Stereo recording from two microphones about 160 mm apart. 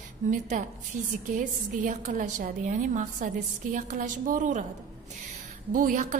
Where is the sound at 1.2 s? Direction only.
55° right (ahead or behind).